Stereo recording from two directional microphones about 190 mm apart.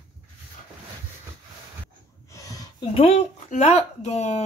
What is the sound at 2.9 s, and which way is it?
Speech, 30° left (ahead or behind).